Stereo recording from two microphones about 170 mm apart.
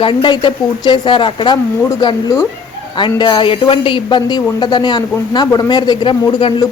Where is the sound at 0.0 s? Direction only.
30° left (ahead or behind).